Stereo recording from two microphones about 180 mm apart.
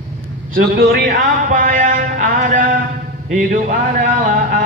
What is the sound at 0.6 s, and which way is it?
Speech, 60° right (ahead or behind).